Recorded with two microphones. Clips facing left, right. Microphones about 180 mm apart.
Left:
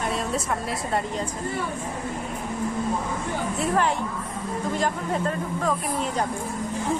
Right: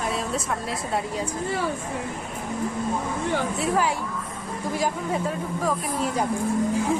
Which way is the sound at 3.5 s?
5° right (ahead or behind).